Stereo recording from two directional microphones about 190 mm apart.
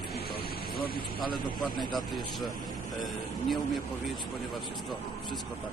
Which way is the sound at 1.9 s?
Centre (ahead or behind).